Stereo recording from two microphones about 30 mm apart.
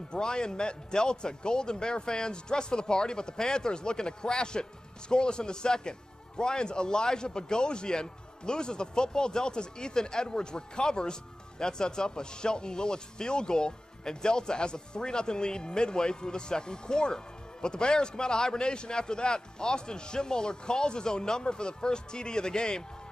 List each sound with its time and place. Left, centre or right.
0.1 s a man's voice: left